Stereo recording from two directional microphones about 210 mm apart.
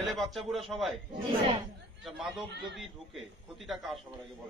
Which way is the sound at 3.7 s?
Centre (ahead or behind).